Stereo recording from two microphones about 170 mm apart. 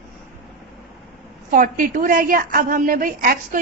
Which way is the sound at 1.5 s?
50° right (ahead or behind).